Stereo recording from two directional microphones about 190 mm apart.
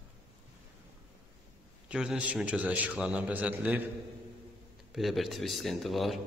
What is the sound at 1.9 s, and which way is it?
A man's voice, 5° right (ahead or behind).